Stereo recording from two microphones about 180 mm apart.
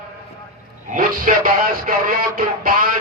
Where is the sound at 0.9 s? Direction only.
50° right (ahead or behind).